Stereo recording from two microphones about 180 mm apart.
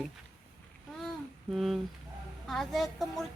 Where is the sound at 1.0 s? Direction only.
Centre (ahead or behind).